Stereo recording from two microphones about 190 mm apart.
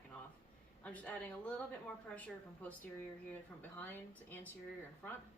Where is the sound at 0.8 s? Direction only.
5° left (ahead or behind).